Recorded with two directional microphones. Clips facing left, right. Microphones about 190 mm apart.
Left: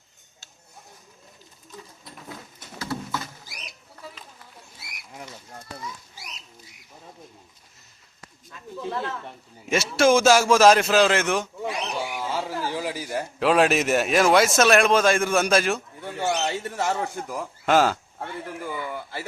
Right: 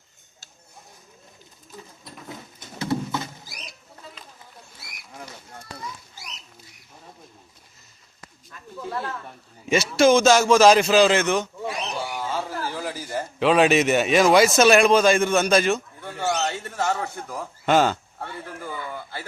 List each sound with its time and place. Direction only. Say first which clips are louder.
2.7 s patter: right 5 dB; 20° right (ahead or behind)
8.8 s snake: left 1 dB; 20° left (ahead or behind)
9.6 s a man's voice: right 2 dB; 5° left (ahead or behind)
11.6 s a sound: even; 15° left (ahead or behind)
13.4 s a man's voice: right 2 dB; centre (ahead or behind)
16.0 s bird: even; 15° left (ahead or behind)
17.7 s a man's voice: right 1 dB; centre (ahead or behind)
18.2 s a sound: left 2 dB; 15° left (ahead or behind)